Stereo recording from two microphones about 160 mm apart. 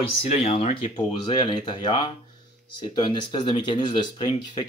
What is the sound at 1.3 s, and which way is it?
Speech, 25° left (ahead or behind).